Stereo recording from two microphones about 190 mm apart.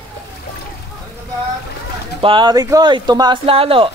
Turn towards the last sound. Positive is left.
turn(degrees=-30)  # may be behind; listen again after turning